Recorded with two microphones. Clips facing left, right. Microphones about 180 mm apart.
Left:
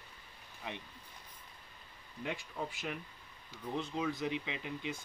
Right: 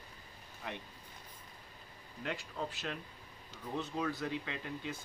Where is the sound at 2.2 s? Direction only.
15° left (ahead or behind).